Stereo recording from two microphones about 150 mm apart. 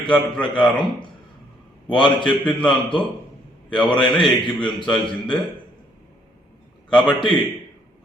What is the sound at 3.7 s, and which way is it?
Speech, 30° left (ahead or behind).